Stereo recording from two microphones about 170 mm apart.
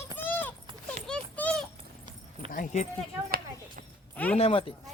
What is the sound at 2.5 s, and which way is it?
Speech, 50° left (ahead or behind).